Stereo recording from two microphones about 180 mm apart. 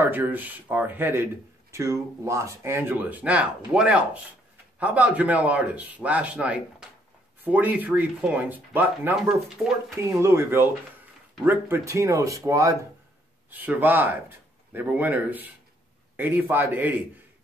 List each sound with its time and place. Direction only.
0.0 s a man's voice: 10° right (ahead or behind)